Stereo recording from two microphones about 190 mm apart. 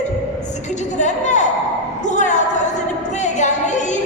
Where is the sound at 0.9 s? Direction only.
40° left (ahead or behind).